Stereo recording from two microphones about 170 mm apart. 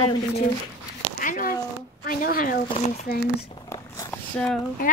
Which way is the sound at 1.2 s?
50° left (ahead or behind).